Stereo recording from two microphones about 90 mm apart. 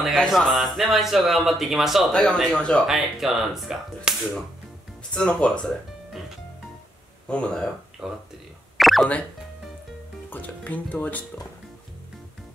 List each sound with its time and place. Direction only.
0.0 s speech: centre (ahead or behind)
2.9 s speech: 5° right (ahead or behind)
5.1 s speech: 10° left (ahead or behind)
7.2 s speech: 15° left (ahead or behind)
8.0 s speech: 5° right (ahead or behind)
8.7 s hiccup: centre (ahead or behind)
10.3 s speech: 15° left (ahead or behind)